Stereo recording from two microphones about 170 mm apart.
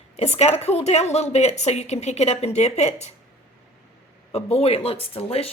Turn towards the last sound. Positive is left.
turn(degrees=35)  # may be behind; listen again after turning